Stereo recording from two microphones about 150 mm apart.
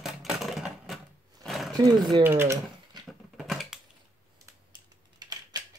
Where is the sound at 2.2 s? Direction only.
15° right (ahead or behind).